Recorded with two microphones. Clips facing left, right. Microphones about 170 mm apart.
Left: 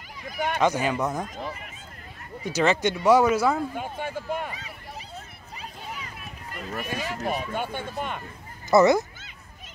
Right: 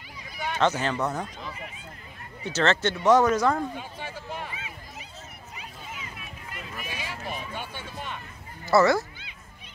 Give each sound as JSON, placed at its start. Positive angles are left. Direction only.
{"t": 0.3, "sound": "a sound", "side_deg": 50}
{"t": 0.6, "sound": "speech", "side_deg": 10}
{"t": 2.4, "sound": "speech", "side_deg": 10}
{"t": 3.7, "sound": "speech", "side_deg": 50}
{"t": 6.7, "sound": "speech", "side_deg": 55}
{"t": 8.6, "sound": "speech", "side_deg": 20}